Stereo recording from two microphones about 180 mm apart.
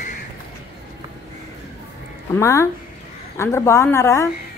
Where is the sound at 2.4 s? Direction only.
15° left (ahead or behind).